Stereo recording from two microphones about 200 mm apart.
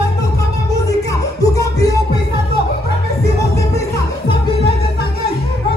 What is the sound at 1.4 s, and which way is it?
Music, 15° left (ahead or behind).